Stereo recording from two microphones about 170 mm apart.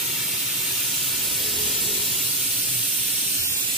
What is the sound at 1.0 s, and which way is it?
Steam, centre (ahead or behind).